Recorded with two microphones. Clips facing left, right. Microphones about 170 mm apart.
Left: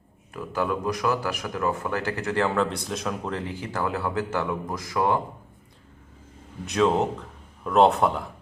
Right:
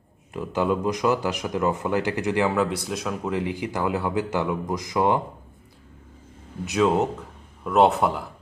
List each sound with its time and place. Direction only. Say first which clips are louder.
0.3 s speech: right 3 dB; 20° right (ahead or behind)
6.7 s a man's voice: right 1 dB; 5° right (ahead or behind)